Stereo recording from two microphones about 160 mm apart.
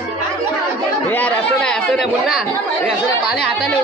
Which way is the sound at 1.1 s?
10° left (ahead or behind).